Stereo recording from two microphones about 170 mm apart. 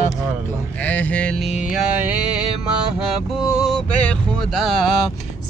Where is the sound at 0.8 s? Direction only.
10° left (ahead or behind).